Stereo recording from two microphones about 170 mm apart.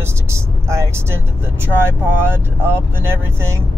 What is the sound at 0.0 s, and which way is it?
Speech, 15° right (ahead or behind).